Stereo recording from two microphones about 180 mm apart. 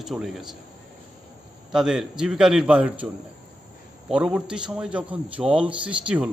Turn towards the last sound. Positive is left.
turn(degrees=-5)  # may be behind; listen again after turning